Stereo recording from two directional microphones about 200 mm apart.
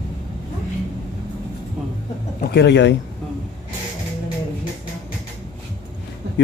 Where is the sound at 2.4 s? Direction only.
55° left (ahead or behind).